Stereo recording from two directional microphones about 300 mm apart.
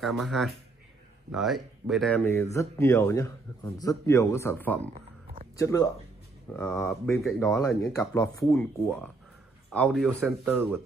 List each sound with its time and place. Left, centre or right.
0.0 s speech: centre
4.9 s a sound: right
5.6 s speech: centre